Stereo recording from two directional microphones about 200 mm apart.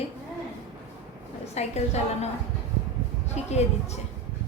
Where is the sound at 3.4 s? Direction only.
35° left (ahead or behind).